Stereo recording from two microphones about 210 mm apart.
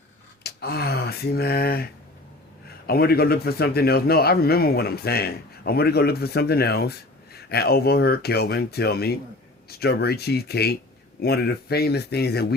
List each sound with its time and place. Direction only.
0.4 s a man's voice: 50° left (ahead or behind)